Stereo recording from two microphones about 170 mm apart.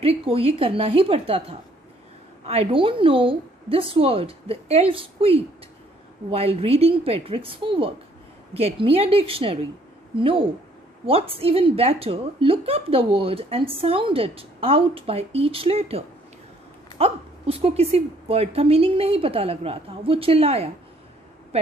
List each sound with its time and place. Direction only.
0.0 s speech: 35° right (ahead or behind)
17.0 s speech: 35° right (ahead or behind)